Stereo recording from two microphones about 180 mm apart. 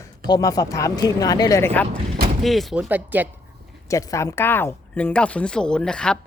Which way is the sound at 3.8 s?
15° left (ahead or behind).